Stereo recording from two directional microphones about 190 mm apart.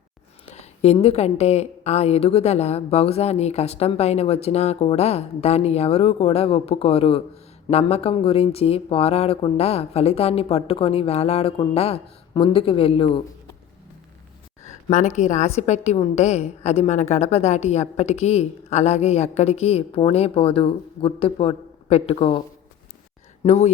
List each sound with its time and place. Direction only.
0.4 s a woman's voice: 35° left (ahead or behind)
14.6 s a woman's voice: 40° left (ahead or behind)
23.4 s speech: 35° left (ahead or behind)